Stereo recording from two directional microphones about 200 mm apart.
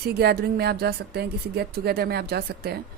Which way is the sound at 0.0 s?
50° right (ahead or behind).